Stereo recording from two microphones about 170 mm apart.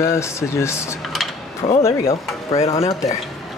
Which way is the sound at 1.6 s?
35° left (ahead or behind).